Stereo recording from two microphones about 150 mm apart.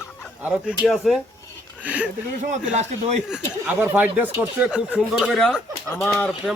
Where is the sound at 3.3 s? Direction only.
10° right (ahead or behind).